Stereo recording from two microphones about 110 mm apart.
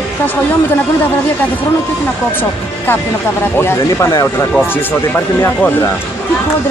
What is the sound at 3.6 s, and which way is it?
Speech, 25° left (ahead or behind).